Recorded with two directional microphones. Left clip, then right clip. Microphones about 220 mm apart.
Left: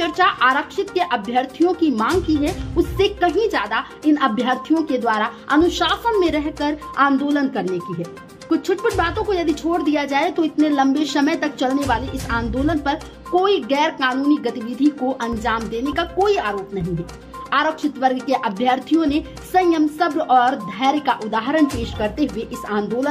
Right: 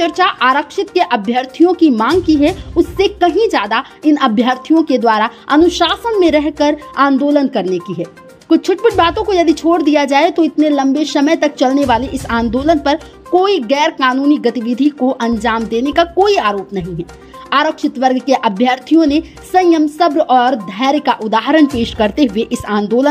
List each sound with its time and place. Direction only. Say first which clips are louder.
0.0 s speech: right 4 dB; 30° right (ahead or behind)
7.6 s speech: right 6 dB; centre (ahead or behind)
8.5 s a woman's voice: right 8 dB; 35° right (ahead or behind)